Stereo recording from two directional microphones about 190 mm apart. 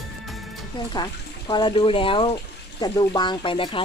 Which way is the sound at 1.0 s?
20° left (ahead or behind).